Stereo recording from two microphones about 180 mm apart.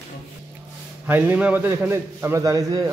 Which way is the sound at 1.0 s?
10° right (ahead or behind).